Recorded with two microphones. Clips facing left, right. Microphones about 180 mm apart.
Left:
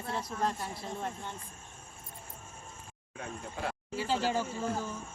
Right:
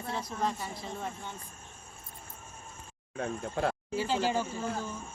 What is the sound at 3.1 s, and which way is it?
Speech, 50° right (ahead or behind).